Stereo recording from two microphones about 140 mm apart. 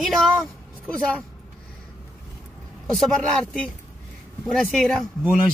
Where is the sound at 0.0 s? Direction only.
Centre (ahead or behind).